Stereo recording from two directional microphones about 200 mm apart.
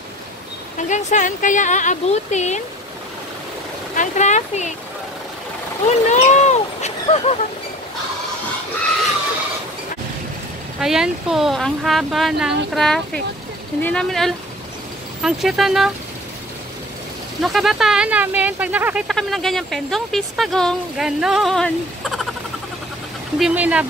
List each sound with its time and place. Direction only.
0.7 s speech: 40° left (ahead or behind)
3.9 s speech: 40° left (ahead or behind)
5.9 s vehicle: 35° left (ahead or behind)
10.8 s speech: 5° right (ahead or behind)
17.4 s speech: centre (ahead or behind)
23.4 s speech: 5° right (ahead or behind)